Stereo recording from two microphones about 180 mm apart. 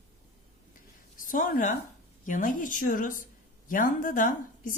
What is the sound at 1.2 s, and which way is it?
A woman's voice, 45° left (ahead or behind).